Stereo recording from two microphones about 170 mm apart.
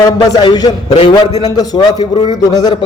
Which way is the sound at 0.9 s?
40° left (ahead or behind).